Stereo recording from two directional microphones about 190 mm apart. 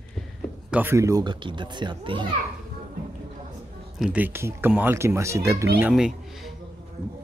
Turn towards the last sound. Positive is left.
turn(degrees=-5)  # may be behind; listen again after turning